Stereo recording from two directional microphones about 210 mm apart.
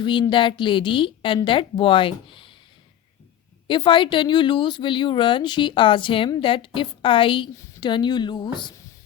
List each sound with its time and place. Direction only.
0.0 s speech: 20° left (ahead or behind)
3.7 s speech: 25° left (ahead or behind)